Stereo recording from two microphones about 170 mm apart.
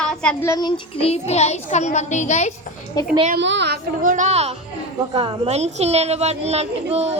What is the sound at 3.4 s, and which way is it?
Speech, 90° right.